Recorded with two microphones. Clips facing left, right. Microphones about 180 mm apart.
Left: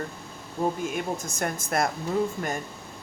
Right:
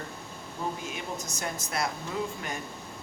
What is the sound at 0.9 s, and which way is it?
Speech, 50° left (ahead or behind).